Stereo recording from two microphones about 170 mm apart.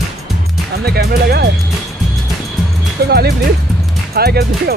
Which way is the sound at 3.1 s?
70° right (ahead or behind).